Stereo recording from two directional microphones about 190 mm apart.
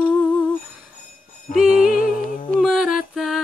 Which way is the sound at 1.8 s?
45° left (ahead or behind).